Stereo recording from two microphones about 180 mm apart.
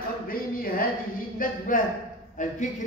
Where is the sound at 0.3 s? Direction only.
55° left (ahead or behind).